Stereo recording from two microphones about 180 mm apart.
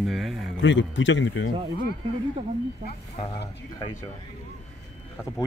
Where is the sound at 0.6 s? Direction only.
90° left.